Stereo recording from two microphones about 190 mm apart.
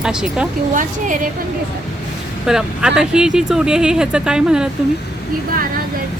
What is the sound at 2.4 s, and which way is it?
Speech, 5° right (ahead or behind).